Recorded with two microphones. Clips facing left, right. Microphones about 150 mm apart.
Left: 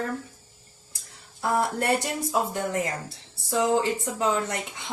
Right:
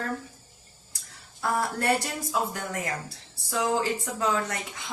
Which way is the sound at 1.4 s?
25° left (ahead or behind).